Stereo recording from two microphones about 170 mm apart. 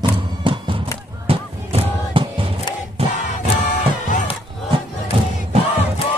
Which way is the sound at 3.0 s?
35° right (ahead or behind).